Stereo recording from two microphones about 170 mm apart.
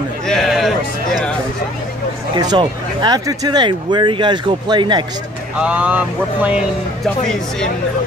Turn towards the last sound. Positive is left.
turn(degrees=-10)  # may be behind; listen again after turning